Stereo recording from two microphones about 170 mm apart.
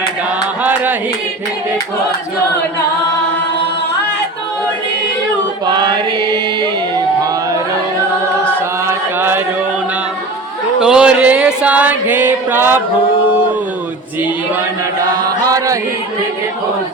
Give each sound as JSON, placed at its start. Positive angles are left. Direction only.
{"t": 0.6, "sound": "music", "side_deg": -10}
{"t": 5.7, "sound": "chant", "side_deg": -25}
{"t": 8.9, "sound": "chant", "side_deg": -10}
{"t": 10.8, "sound": "chant", "side_deg": -5}
{"t": 15.4, "sound": "chant", "side_deg": -20}